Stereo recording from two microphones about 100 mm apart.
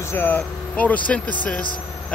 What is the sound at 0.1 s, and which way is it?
Speech, 20° left (ahead or behind).